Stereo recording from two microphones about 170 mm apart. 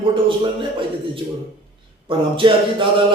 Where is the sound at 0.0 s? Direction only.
30° right (ahead or behind).